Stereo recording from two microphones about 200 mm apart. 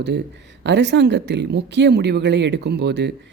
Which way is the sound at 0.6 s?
60° right (ahead or behind).